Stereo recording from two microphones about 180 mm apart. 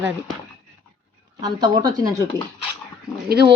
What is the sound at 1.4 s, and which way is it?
Speech, 25° right (ahead or behind).